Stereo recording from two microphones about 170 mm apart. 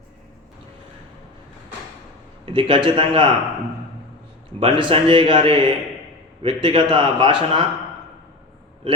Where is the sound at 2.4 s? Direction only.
30° right (ahead or behind).